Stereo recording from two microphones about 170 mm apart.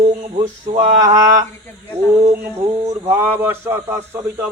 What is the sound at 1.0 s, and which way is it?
Speech, 20° right (ahead or behind).